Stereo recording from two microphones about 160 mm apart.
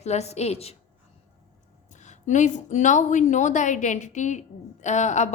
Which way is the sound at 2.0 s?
50° left (ahead or behind).